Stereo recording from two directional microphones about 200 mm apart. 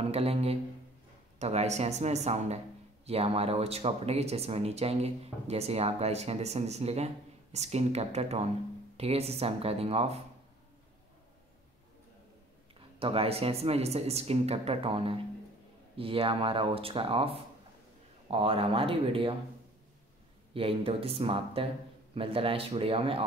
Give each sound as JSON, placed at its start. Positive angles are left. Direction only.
{"t": 0.0, "sound": "speech", "side_deg": -30}
{"t": 13.0, "sound": "speech", "side_deg": -30}
{"t": 20.5, "sound": "speech", "side_deg": -30}